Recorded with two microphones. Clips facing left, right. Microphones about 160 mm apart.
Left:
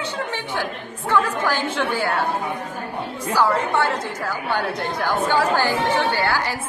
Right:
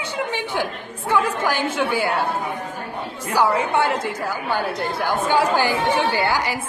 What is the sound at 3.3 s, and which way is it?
A woman's voice, 15° right (ahead or behind).